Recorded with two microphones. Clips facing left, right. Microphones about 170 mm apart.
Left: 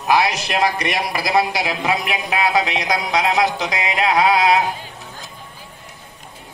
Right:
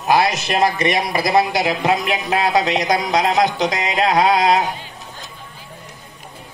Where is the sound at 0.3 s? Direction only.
20° right (ahead or behind).